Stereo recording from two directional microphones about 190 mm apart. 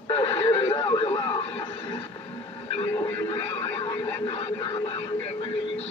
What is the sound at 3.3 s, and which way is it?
Speech, 25° left (ahead or behind).